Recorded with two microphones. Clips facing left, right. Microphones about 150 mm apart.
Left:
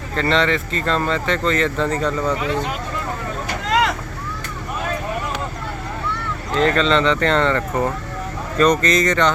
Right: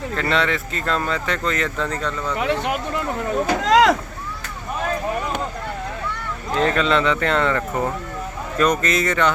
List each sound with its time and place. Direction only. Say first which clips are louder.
0.2 s speech: left 4 dB; 5° right (ahead or behind)
2.0 s speech: left 5 dB; 35° left (ahead or behind)
2.4 s speech: right 1 dB; 70° right (ahead or behind)
3.7 s vehicle: right 4 dB; 90° right
6.5 s speech: left 2 dB; 10° right (ahead or behind)